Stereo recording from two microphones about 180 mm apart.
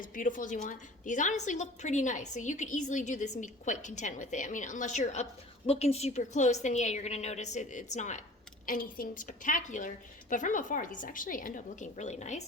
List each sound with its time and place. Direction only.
0.0 s a woman's voice: 45° left (ahead or behind)